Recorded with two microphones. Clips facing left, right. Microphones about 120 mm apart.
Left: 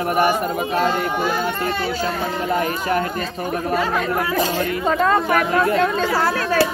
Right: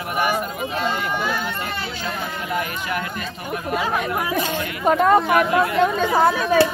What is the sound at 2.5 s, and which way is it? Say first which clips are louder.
Speech: left 5 dB; 35° left (ahead or behind).